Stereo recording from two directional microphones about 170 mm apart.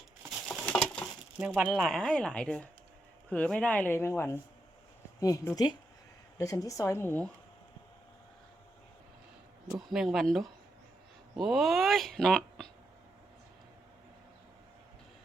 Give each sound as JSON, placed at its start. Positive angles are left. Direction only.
{"t": 0.2, "sound": "a sound", "side_deg": -5}
{"t": 0.6, "sound": "patter", "side_deg": 5}
{"t": 1.4, "sound": "speech", "side_deg": -10}
{"t": 9.7, "sound": "speech", "side_deg": 0}